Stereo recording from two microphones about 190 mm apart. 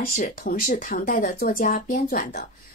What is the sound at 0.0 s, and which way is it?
Speech, 45° left (ahead or behind).